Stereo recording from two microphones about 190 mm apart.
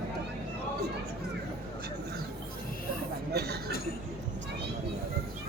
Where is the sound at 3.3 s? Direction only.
60° right (ahead or behind).